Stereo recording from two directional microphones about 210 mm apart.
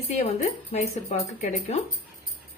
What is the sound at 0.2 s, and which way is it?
A woman's voice, 35° left (ahead or behind).